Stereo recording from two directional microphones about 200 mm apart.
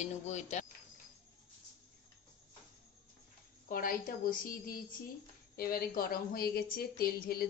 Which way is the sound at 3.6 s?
45° left (ahead or behind).